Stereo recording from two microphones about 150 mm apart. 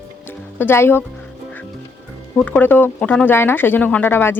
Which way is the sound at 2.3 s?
10° left (ahead or behind).